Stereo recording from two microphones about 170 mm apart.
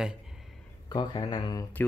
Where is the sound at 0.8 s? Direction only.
25° left (ahead or behind).